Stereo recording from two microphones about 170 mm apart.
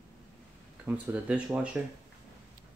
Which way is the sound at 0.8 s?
10° right (ahead or behind).